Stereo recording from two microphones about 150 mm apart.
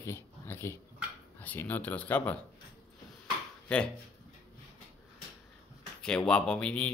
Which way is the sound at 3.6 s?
5° left (ahead or behind).